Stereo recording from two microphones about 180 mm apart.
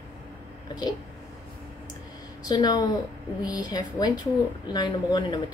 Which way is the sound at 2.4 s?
20° left (ahead or behind).